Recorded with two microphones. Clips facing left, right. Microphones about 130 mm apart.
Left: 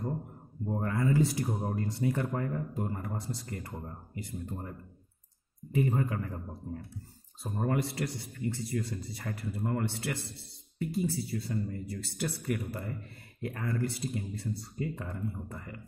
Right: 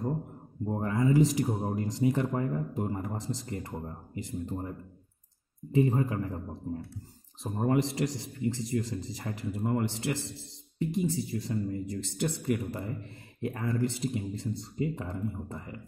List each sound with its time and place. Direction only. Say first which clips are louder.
0.7 s speech: right 3 dB; 25° right (ahead or behind)